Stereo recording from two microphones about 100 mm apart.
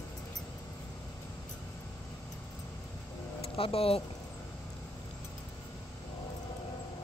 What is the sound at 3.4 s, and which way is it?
Vehicle, 70° left (ahead or behind).